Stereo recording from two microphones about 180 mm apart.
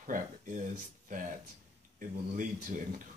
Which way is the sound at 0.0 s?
45° right (ahead or behind).